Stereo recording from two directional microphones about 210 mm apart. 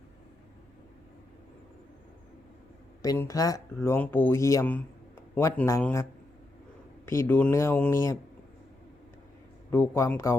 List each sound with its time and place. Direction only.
3.0 s speech: 15° left (ahead or behind)
9.7 s speech: 10° left (ahead or behind)